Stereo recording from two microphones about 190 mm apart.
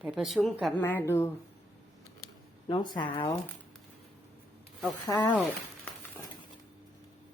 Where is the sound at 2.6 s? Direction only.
25° left (ahead or behind).